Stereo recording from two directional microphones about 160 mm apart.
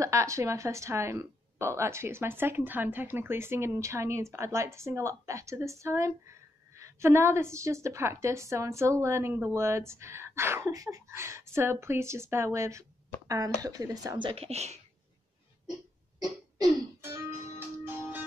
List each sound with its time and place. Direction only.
0.0 s speech: 20° right (ahead or behind); by 14.8 s 40° right (ahead or behind)
16.2 s music: 25° right (ahead or behind)